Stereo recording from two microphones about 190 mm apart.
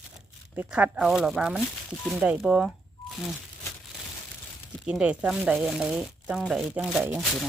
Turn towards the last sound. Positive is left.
turn(degrees=-5)  # may be behind; listen again after turning